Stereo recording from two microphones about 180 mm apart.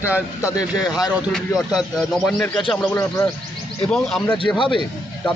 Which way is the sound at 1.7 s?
Centre (ahead or behind).